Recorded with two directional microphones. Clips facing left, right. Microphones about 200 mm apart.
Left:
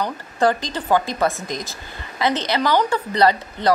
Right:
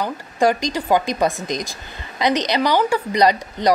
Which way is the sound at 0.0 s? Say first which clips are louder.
Right 1 dB; 15° right (ahead or behind).